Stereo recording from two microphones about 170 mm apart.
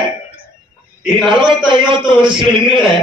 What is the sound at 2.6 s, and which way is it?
Speech, centre (ahead or behind).